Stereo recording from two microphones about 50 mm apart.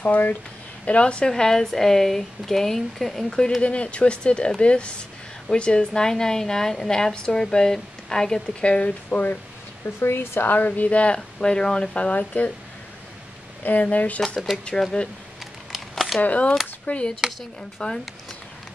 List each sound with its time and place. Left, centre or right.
0.0 s a woman's voice: left
0.8 s speech: left
1.3 s a woman's voice: centre
3.3 s a woman's voice: centre
9.8 s a woman's voice: left
11.1 s speech: centre
13.6 s a woman's voice: left
14.8 s a woman's voice: centre
15.7 s crumpling: centre
16.2 s a woman's voice: left